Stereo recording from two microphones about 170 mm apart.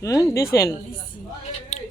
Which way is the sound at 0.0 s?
20° left (ahead or behind).